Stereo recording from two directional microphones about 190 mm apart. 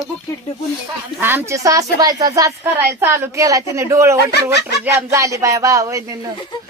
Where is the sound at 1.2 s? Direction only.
10° right (ahead or behind).